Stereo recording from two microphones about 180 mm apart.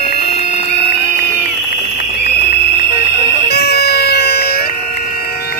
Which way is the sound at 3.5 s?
65° left (ahead or behind).